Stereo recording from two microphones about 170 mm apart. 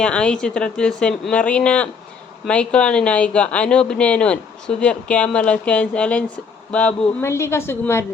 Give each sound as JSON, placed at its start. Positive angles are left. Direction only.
{"t": 0.0, "sound": "speech", "side_deg": 5}